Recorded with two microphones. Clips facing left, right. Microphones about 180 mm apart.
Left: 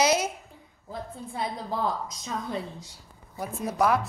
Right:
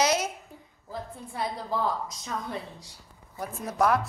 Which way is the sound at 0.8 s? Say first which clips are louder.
Left 1 dB; 20° left (ahead or behind).